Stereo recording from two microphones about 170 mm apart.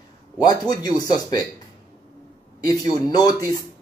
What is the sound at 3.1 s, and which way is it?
Speech, 25° left (ahead or behind).